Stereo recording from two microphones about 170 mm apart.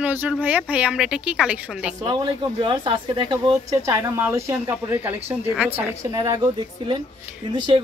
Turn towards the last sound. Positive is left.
turn(degrees=-25)  # may be behind; listen again after turning